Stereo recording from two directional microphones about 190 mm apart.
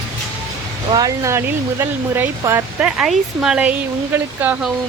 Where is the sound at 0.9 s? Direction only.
20° right (ahead or behind).